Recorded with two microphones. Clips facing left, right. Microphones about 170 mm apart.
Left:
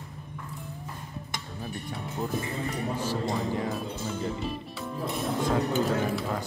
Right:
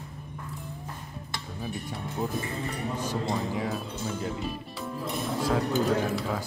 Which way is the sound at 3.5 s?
Centre (ahead or behind).